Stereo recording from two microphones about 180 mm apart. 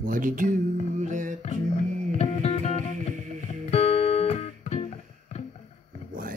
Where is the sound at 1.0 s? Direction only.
45° right (ahead or behind).